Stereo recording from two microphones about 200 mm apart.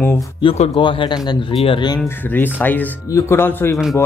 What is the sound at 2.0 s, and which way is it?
Speech, 10° left (ahead or behind).